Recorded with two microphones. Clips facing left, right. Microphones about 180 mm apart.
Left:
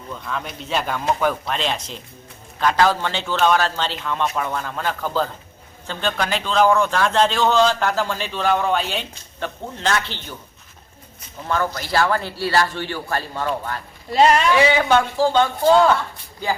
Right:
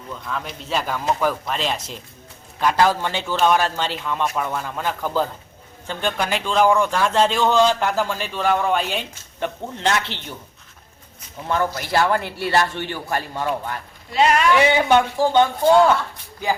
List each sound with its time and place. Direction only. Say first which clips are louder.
0.3 s speech: even; centre (ahead or behind)
9.4 s speech: right 2 dB; 20° right (ahead or behind)
11.4 s speech: right 1 dB; 20° right (ahead or behind)
14.1 s speech: left 3 dB; 35° left (ahead or behind)
14.7 s speech: right 1 dB; 20° right (ahead or behind)